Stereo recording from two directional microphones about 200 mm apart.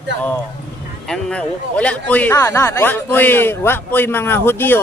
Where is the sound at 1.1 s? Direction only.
5° left (ahead or behind).